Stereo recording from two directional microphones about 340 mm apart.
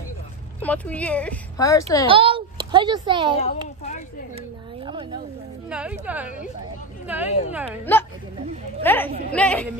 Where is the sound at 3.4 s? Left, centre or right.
Centre.